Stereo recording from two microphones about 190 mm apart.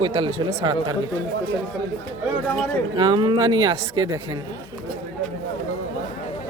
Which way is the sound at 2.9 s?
25° right (ahead or behind).